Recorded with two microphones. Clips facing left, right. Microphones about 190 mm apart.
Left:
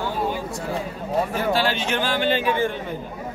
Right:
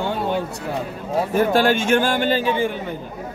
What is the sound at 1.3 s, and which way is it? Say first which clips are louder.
Speech: right 5 dB; 50° right (ahead or behind).